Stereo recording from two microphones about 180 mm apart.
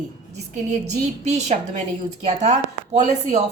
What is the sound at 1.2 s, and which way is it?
A woman's voice, 40° right (ahead or behind).